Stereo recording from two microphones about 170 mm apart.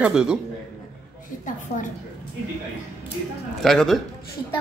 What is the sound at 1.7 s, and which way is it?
Speech, 70° left (ahead or behind).